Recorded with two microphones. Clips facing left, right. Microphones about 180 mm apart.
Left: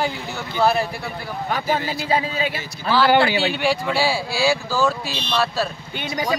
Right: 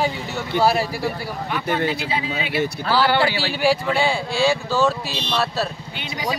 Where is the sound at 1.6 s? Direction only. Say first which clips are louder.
Right 5 dB; 65° right (ahead or behind).